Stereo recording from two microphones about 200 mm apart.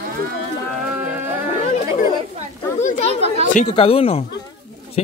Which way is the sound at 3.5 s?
30° left (ahead or behind).